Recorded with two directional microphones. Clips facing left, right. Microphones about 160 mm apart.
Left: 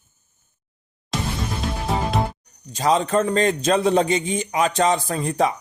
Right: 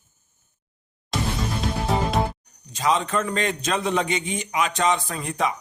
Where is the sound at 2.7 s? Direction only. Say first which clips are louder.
Left 4 dB; 35° left (ahead or behind).